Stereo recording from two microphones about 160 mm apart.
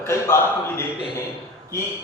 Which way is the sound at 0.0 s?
15° left (ahead or behind).